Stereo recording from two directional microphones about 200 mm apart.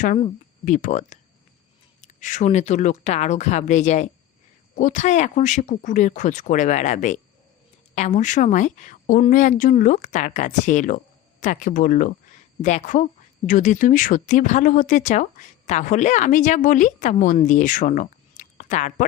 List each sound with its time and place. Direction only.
0.6 s speech: 40° left (ahead or behind)